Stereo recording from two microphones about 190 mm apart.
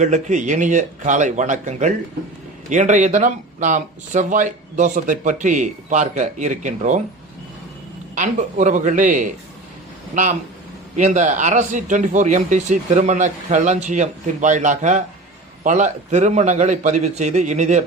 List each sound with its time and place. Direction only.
0.0 s speech: 40° right (ahead or behind)
8.1 s speech: 40° right (ahead or behind)
10.9 s speech: 40° right (ahead or behind)